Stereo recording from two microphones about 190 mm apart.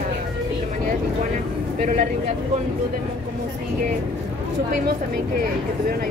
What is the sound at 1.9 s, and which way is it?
Speech, 40° right (ahead or behind).